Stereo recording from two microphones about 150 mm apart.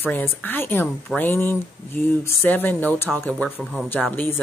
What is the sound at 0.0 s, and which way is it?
Speech, 10° left (ahead or behind).